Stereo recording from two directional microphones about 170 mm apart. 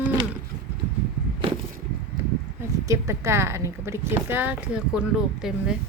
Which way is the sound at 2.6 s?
15° right (ahead or behind).